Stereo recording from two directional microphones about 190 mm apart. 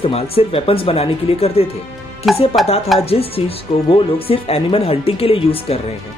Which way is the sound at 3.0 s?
30° left (ahead or behind).